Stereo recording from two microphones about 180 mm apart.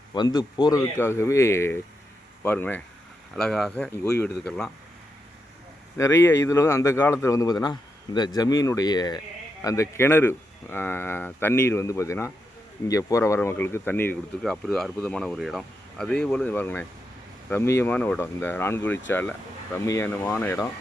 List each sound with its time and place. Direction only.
0.1 s speech: 20° left (ahead or behind); by 4.7 s 5° left (ahead or behind)
6.0 s speech: 15° left (ahead or behind)